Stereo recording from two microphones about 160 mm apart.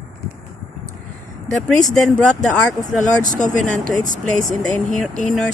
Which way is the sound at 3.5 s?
55° right (ahead or behind).